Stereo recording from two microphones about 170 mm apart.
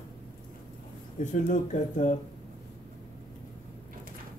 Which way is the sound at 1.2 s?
50° left (ahead or behind).